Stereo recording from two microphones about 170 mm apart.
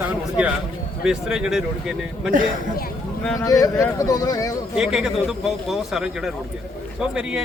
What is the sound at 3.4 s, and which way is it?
Speech, 20° left (ahead or behind).